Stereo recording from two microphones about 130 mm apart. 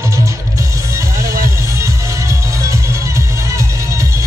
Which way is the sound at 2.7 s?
25° right (ahead or behind).